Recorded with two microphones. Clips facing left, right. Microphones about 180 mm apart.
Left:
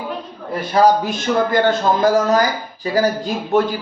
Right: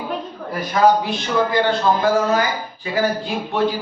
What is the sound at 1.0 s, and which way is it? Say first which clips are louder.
Speech: left 2 dB; 45° left (ahead or behind).